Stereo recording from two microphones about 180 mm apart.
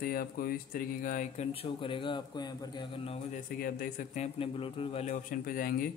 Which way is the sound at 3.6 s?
50° left (ahead or behind).